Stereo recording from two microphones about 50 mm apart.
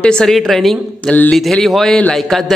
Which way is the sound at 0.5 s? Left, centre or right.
Centre.